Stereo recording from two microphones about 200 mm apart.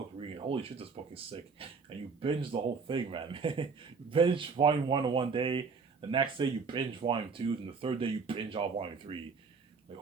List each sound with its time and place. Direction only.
0.2 s speech: 30° right (ahead or behind)